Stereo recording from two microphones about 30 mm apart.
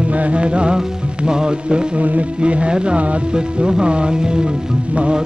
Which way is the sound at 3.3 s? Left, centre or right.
Right.